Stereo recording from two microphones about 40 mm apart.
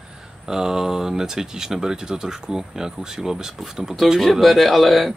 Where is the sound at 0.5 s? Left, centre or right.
Centre.